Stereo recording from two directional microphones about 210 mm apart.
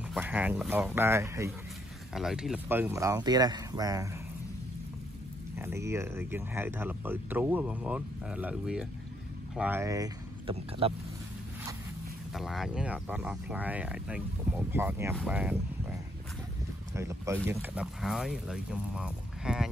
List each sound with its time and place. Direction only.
0.1 s speech: 10° right (ahead or behind)
2.1 s speech: centre (ahead or behind); by 4.1 s 15° right (ahead or behind)
5.6 s speech: 10° right (ahead or behind)
10.8 s speech: 25° right (ahead or behind)
12.4 s speech: centre (ahead or behind)
16.9 s speech: 15° right (ahead or behind)